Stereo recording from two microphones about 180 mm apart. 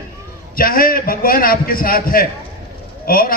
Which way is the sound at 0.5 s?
55° left (ahead or behind).